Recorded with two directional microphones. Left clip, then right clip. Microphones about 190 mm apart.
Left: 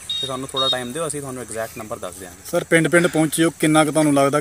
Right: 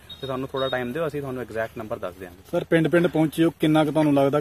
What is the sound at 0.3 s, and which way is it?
Speech, centre (ahead or behind).